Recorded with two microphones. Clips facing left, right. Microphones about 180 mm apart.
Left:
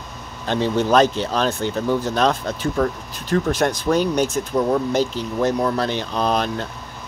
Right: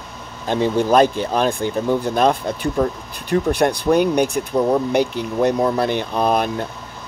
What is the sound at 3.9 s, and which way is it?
Speech, 55° right (ahead or behind).